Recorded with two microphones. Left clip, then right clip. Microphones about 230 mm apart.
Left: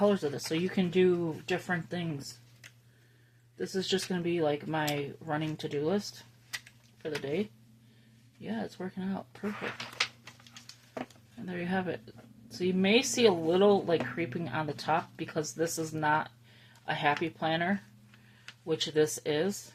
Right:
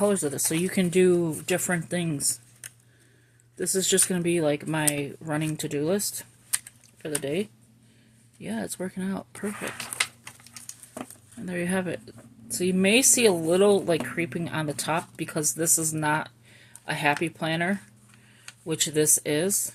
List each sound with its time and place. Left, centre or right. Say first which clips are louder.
0.0 s speech: right 3 dB; right
3.6 s speech: right 7 dB; right
11.4 s speech: right 5 dB; right